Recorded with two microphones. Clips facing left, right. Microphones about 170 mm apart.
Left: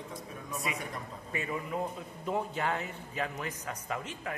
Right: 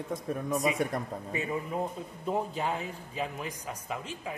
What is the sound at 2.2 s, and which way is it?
Speech, 15° right (ahead or behind).